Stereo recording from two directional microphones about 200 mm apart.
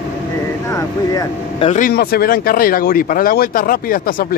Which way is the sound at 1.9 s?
50° left (ahead or behind).